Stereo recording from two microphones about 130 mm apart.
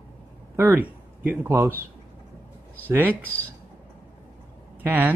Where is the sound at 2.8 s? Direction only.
15° right (ahead or behind).